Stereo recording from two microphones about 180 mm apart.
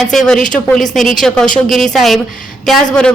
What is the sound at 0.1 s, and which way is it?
Speech, centre (ahead or behind).